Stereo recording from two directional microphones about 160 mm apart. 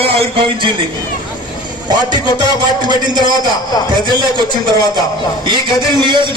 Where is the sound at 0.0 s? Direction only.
35° right (ahead or behind).